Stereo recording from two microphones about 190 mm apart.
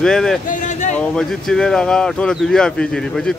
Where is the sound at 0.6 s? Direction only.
40° left (ahead or behind).